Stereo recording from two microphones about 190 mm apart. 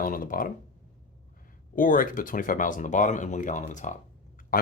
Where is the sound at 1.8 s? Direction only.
45° left (ahead or behind).